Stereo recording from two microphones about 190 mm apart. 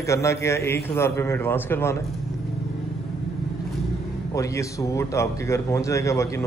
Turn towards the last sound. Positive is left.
turn(degrees=15)  # may be behind; listen again after turning